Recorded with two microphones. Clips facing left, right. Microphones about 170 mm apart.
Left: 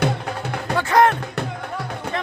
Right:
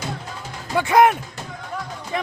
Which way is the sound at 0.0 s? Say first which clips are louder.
Left 8 dB; 65° left (ahead or behind).